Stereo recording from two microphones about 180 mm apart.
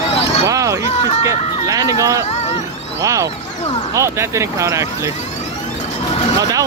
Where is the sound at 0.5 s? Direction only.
20° right (ahead or behind).